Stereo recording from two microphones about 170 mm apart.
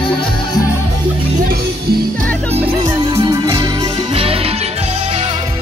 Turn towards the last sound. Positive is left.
turn(degrees=-35)  # may be behind; listen again after turning